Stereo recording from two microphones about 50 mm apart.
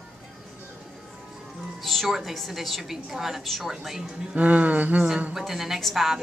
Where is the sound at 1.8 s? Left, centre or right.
Centre.